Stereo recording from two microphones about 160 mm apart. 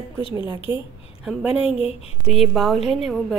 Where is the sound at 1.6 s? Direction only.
40° left (ahead or behind).